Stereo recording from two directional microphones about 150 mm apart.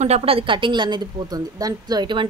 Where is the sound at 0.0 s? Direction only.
40° right (ahead or behind).